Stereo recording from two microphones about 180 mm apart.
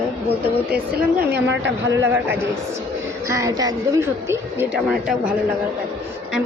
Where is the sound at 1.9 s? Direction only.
15° right (ahead or behind).